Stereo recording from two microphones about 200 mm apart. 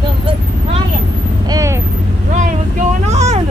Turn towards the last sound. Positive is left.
turn(degrees=-35)  # may be behind; listen again after turning